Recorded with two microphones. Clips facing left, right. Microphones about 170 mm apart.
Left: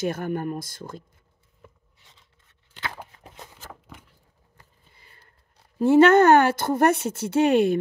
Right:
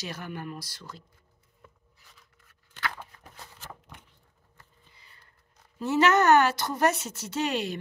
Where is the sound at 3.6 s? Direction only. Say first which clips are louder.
Left 2 dB; 5° left (ahead or behind).